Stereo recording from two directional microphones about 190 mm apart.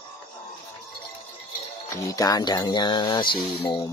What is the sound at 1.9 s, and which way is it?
Speech, 15° left (ahead or behind).